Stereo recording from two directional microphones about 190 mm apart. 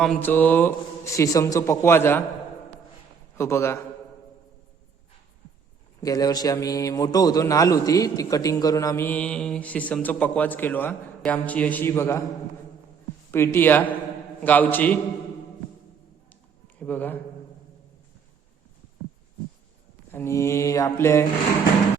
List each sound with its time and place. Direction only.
0.0 s a man's voice: 5° left (ahead or behind)
3.3 s a man's voice: 15° left (ahead or behind)
6.0 s a man's voice: 20° left (ahead or behind)
13.3 s a man's voice: 10° left (ahead or behind)
16.3 s a sound: 10° left (ahead or behind)
20.1 s a man's voice: 10° left (ahead or behind)